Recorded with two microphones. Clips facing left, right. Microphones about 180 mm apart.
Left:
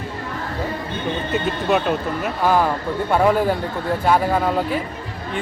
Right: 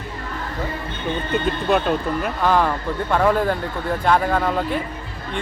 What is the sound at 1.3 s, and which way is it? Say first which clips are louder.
Speech: even; 5° left (ahead or behind).